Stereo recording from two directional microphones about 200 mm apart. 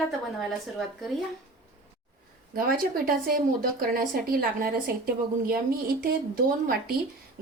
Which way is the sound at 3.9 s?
45° right (ahead or behind).